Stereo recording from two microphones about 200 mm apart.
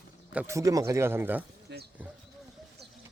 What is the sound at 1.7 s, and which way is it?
Basketball bounce, 60° right (ahead or behind).